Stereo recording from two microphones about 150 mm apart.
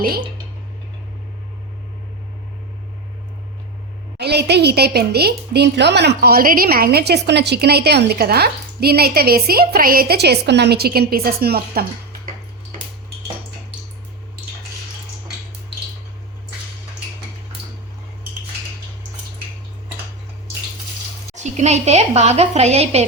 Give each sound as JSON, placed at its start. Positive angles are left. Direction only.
{"t": 4.2, "sound": "a woman's voice", "side_deg": -90}
{"t": 21.3, "sound": "a woman's voice", "side_deg": -50}